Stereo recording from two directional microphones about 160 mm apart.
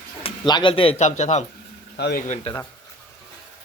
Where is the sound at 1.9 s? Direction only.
90° left.